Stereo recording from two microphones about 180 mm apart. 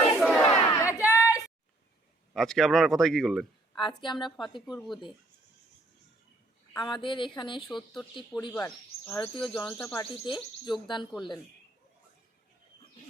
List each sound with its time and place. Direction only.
0.0 s battle cry: centre (ahead or behind)
0.7 s a sound: 15° left (ahead or behind)
2.3 s speech: centre (ahead or behind)
3.8 s a woman's voice: 25° left (ahead or behind)
4.6 s speech: centre (ahead or behind)
6.7 s a woman's voice: 25° left (ahead or behind)
7.7 s speech: centre (ahead or behind)
10.2 s a woman's voice: 25° left (ahead or behind)